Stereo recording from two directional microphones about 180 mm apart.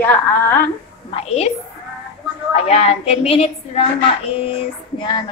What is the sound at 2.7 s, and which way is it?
A woman's voice, 35° left (ahead or behind).